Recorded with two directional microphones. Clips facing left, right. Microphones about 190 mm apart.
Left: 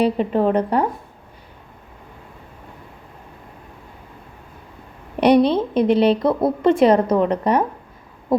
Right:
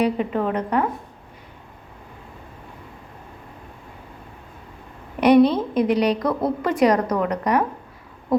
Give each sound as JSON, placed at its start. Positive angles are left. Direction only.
{"t": 0.0, "sound": "a woman's voice", "side_deg": 30}
{"t": 5.2, "sound": "speech", "side_deg": 30}